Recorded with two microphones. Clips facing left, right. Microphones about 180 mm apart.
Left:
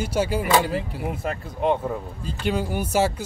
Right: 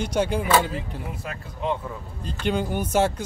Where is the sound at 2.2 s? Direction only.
5° left (ahead or behind).